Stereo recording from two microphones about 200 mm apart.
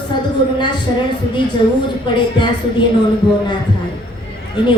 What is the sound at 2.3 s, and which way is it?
Speech, 25° left (ahead or behind).